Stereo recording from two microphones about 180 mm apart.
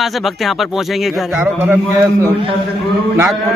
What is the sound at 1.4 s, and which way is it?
Speech, 10° right (ahead or behind).